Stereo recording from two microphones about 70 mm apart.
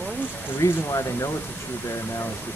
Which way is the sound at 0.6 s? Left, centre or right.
Left.